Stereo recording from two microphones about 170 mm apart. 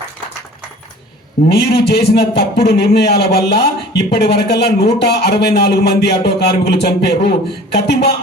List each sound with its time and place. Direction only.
1.9 s a man's voice: 70° left (ahead or behind)